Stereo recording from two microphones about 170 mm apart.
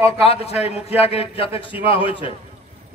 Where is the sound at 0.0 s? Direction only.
35° left (ahead or behind).